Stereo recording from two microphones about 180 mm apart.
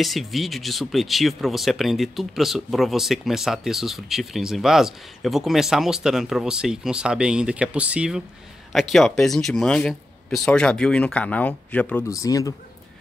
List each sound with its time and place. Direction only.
0.0 s speech: centre (ahead or behind)
12.1 s speech: 20° left (ahead or behind)